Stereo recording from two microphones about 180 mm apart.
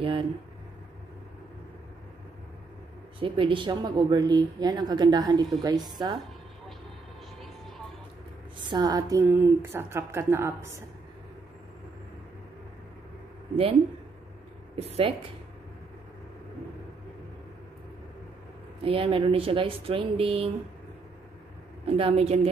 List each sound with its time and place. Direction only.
3.2 s speech: 30° right (ahead or behind)
8.6 s a woman's voice: 20° right (ahead or behind)
14.8 s speech: 35° right (ahead or behind)
18.9 s speech: 30° right (ahead or behind)
21.8 s speech: 30° right (ahead or behind)